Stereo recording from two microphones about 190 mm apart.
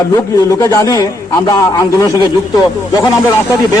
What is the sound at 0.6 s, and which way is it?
A man's voice, 20° left (ahead or behind).